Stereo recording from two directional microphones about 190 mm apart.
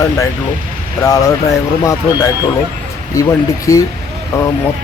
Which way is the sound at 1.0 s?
15° left (ahead or behind).